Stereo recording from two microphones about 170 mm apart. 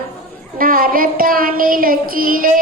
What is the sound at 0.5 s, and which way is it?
Child singing, 55° right (ahead or behind).